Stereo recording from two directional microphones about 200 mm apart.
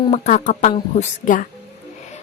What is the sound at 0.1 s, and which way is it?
Speech, 35° left (ahead or behind).